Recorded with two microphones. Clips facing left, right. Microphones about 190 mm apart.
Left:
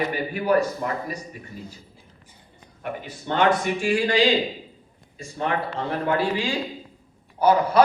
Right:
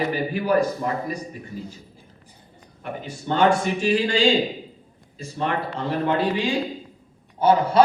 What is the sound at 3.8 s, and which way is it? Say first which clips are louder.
Speech: left 1 dB; 25° right (ahead or behind).